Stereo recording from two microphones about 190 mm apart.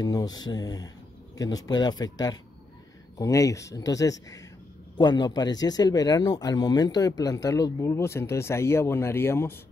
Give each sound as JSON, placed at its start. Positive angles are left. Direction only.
{"t": 0.0, "sound": "speech", "side_deg": 20}